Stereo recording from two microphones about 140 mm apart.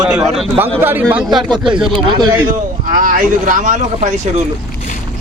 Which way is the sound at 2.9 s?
75° right (ahead or behind).